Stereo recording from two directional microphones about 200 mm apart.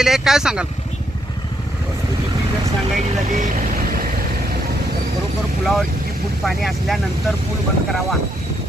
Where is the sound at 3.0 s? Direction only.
40° right (ahead or behind).